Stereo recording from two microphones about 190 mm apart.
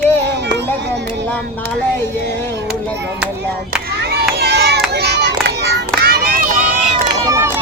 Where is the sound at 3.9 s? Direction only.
60° right (ahead or behind).